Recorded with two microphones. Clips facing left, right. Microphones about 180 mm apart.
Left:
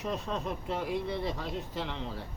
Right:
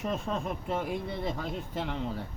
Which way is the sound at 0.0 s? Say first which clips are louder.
Right 2 dB; 50° right (ahead or behind).